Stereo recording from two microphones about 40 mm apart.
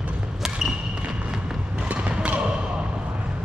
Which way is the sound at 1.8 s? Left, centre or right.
Right.